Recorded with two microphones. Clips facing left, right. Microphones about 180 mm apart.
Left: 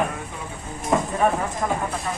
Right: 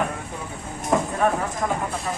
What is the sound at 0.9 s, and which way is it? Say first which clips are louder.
Clip-clop: even; centre (ahead or behind).